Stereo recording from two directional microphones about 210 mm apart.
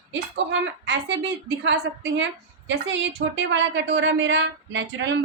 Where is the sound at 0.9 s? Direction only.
60° right (ahead or behind).